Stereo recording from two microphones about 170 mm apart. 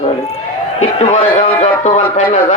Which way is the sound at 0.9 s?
35° left (ahead or behind).